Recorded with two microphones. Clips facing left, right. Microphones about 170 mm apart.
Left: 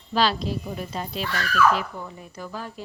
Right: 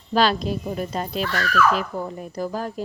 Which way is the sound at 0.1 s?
50° right (ahead or behind).